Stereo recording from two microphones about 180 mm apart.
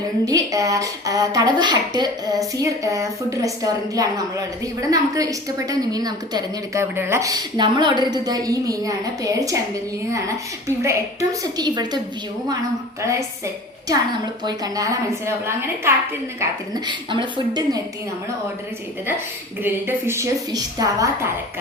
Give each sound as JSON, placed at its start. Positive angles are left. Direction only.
{"t": 0.3, "sound": "a woman's voice", "side_deg": -20}
{"t": 13.0, "sound": "a woman's voice", "side_deg": -15}
{"t": 19.6, "sound": "a woman's voice", "side_deg": -10}